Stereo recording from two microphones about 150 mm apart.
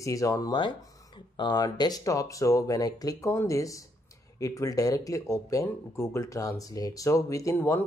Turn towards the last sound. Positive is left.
turn(degrees=15)  # may be behind; listen again after turning